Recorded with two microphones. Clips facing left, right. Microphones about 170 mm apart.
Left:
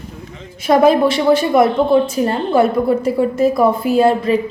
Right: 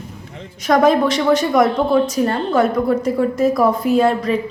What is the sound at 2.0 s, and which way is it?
A woman's voice, 30° left (ahead or behind).